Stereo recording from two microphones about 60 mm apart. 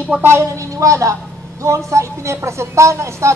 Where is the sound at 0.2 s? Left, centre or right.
Right.